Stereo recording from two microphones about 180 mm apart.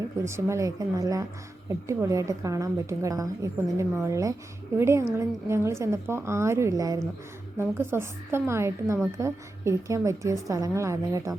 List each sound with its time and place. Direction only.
0.3 s a woman's voice: 15° right (ahead or behind)